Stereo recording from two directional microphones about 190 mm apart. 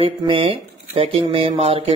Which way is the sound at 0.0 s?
30° right (ahead or behind).